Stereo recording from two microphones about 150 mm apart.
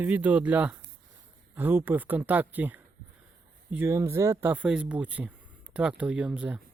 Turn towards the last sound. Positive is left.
turn(degrees=-5)  # may be behind; listen again after turning